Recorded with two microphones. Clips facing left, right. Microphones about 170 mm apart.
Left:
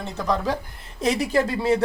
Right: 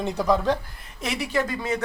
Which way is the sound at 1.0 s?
40° left (ahead or behind).